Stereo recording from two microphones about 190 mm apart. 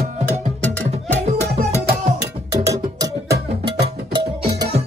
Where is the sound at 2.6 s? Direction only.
15° right (ahead or behind).